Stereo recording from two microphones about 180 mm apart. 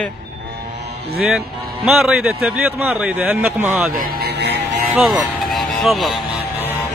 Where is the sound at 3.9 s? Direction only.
55° right (ahead or behind).